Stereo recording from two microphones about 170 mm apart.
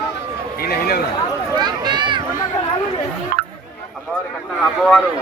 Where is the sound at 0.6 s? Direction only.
65° left (ahead or behind).